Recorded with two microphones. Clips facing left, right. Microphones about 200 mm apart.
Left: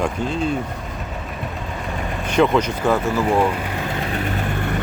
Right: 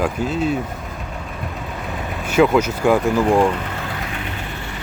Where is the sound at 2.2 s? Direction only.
5° right (ahead or behind).